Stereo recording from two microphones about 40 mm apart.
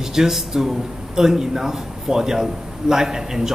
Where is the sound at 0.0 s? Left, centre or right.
Centre.